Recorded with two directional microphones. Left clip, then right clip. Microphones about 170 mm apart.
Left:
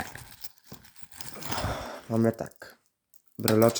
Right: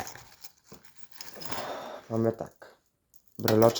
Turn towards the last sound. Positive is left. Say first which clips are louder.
# right 1 dB
turn(degrees=20)  # may be behind; listen again after turning